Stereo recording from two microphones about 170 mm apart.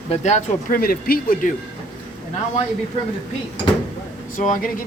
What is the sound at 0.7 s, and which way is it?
Speech, 60° left (ahead or behind).